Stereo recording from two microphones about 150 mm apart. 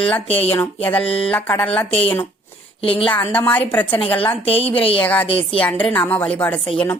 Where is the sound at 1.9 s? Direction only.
40° left (ahead or behind).